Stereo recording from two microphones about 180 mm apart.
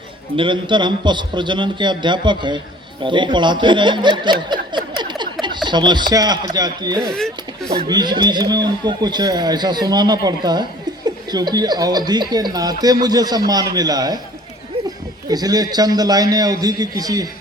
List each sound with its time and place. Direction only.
0.3 s a man's voice: 25° right (ahead or behind)